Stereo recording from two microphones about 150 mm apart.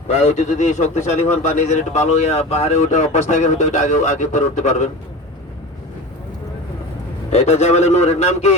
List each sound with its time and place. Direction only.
0.1 s a man's voice: 50° left (ahead or behind)
7.3 s a man's voice: 45° left (ahead or behind)